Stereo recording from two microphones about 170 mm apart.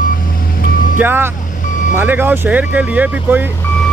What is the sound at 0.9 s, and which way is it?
Speech, 10° right (ahead or behind).